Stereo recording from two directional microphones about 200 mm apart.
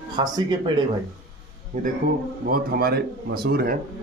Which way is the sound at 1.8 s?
40° right (ahead or behind).